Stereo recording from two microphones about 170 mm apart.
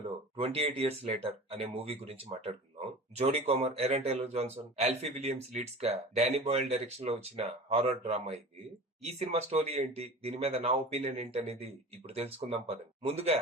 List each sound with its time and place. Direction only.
0.0 s a man's voice: 35° right (ahead or behind)